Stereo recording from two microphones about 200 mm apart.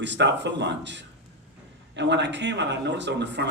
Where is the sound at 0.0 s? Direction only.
60° right (ahead or behind).